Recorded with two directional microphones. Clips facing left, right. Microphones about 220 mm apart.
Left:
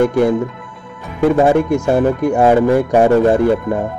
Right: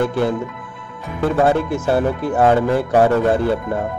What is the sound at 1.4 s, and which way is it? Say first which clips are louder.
A man's voice: left 1 dB; 15° left (ahead or behind).